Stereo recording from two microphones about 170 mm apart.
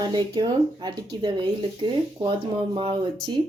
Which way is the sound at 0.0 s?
25° right (ahead or behind).